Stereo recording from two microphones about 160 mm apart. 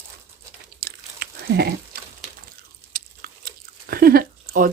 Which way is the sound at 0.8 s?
75° right (ahead or behind).